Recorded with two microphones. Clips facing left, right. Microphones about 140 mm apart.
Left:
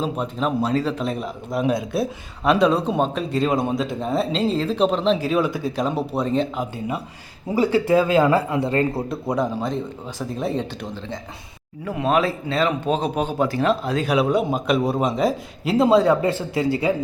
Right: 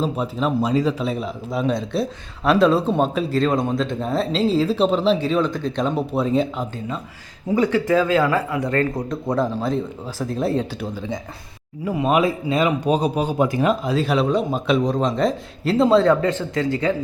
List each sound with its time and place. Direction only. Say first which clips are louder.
0.0 s speech: right 1 dB; centre (ahead or behind)
6.6 s a man's voice: left 1 dB; 10° left (ahead or behind)
8.9 s speech: right 1 dB; 5° left (ahead or behind); by 14.0 s 10° right (ahead or behind)
14.0 s speech: left 1 dB; centre (ahead or behind)
15.9 s a man's voice: even; 20° left (ahead or behind)